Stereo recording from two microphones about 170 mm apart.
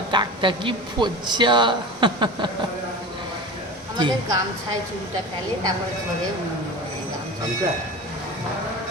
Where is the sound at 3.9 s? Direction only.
25° right (ahead or behind).